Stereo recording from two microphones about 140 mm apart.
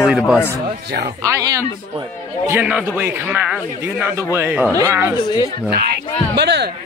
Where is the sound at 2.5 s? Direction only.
10° right (ahead or behind).